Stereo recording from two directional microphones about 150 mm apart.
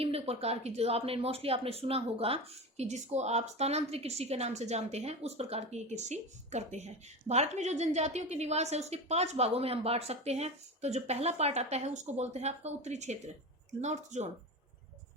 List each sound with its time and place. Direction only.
0.0 s a woman's voice: 40° right (ahead or behind)